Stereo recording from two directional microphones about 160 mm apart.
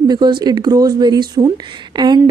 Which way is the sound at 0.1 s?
25° right (ahead or behind).